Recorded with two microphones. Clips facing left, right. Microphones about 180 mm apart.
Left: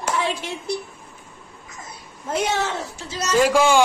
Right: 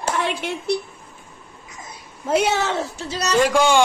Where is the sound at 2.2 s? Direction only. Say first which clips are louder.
Right 4 dB; 70° right (ahead or behind).